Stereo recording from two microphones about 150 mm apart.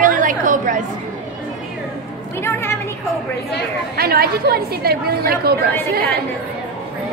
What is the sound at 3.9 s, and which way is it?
A woman's voice, 90° right.